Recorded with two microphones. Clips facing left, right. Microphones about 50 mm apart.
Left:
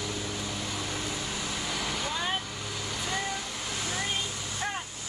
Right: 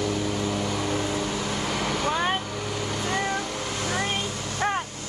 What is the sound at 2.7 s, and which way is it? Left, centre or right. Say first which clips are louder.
Vehicle: right 6 dB; right.